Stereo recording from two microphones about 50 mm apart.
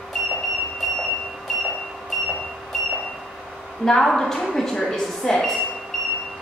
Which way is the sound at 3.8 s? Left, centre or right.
Centre.